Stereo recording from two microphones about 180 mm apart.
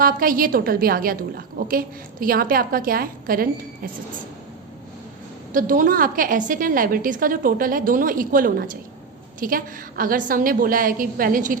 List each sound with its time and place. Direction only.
0.0 s a woman's voice: 55° right (ahead or behind)
5.5 s a woman's voice: 50° right (ahead or behind)